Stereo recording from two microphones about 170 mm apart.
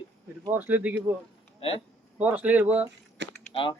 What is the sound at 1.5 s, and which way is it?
Speech, 35° left (ahead or behind).